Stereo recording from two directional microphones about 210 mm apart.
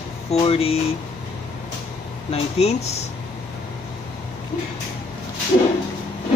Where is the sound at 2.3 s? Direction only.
30° left (ahead or behind).